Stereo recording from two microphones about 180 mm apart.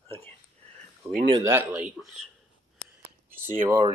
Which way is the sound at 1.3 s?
15° right (ahead or behind).